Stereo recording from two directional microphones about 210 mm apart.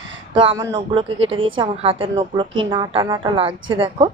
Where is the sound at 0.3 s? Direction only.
25° right (ahead or behind).